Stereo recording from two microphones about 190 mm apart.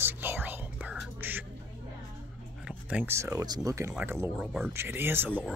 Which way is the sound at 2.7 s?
5° right (ahead or behind).